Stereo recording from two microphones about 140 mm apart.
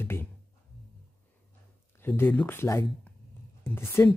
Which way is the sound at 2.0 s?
15° left (ahead or behind).